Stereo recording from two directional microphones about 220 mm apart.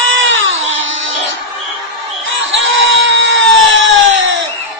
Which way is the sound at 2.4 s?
60° right (ahead or behind).